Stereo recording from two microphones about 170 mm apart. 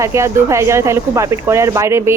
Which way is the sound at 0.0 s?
15° right (ahead or behind).